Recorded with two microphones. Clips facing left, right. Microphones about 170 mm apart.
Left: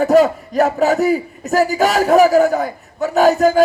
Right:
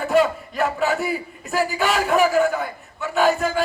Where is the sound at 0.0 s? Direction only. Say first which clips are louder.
Left 7 dB; 40° left (ahead or behind).